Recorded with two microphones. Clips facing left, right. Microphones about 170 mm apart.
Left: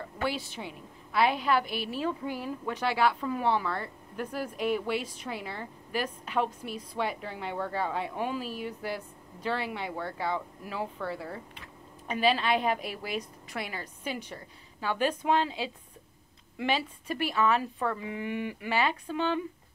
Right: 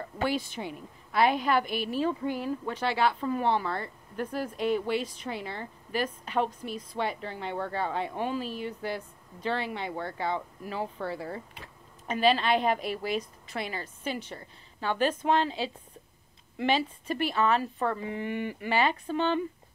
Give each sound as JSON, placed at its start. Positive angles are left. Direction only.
{"t": 0.3, "sound": "a woman's voice", "side_deg": -50}
{"t": 1.4, "sound": "speech", "side_deg": 5}
{"t": 12.1, "sound": "speech", "side_deg": 10}